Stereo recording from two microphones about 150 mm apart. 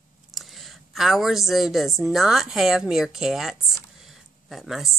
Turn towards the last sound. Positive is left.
turn(degrees=0)  # may be behind; listen again after turning